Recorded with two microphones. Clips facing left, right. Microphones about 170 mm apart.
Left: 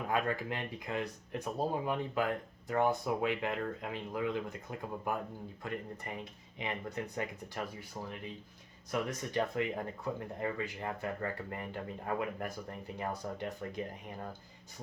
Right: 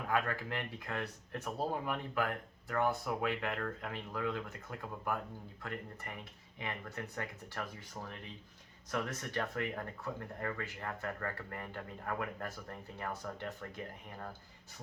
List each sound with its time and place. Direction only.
0.1 s speech: 20° left (ahead or behind)